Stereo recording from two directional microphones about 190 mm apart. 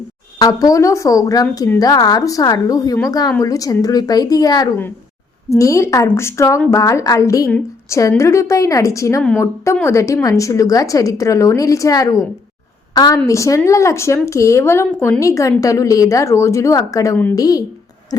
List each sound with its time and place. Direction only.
0.3 s a woman's voice: 20° left (ahead or behind)